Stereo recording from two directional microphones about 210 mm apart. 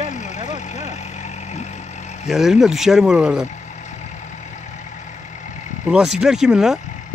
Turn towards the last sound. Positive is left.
turn(degrees=0)  # may be behind; listen again after turning